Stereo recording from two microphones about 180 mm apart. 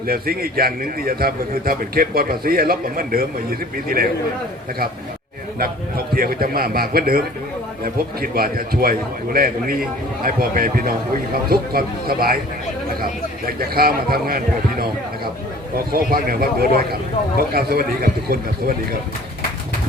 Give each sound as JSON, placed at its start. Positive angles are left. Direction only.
{"t": 0.1, "sound": "a man's voice", "side_deg": -55}
{"t": 6.1, "sound": "a man's voice", "side_deg": -55}
{"t": 13.6, "sound": "a man's voice", "side_deg": -55}
{"t": 15.9, "sound": "a man's voice", "side_deg": -55}